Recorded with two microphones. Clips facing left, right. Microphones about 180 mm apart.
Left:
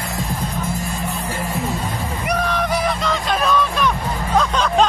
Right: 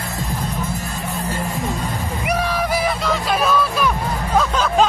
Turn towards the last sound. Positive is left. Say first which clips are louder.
# even
turn(degrees=-5)  # may be behind; listen again after turning